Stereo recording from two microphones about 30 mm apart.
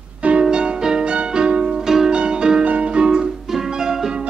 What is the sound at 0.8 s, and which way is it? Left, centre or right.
Music, right.